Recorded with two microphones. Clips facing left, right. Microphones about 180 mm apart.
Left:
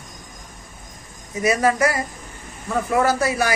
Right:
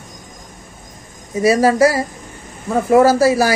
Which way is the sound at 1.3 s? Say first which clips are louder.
Right 6 dB; 30° right (ahead or behind).